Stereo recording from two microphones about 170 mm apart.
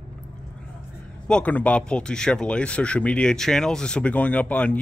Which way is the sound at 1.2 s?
5° left (ahead or behind).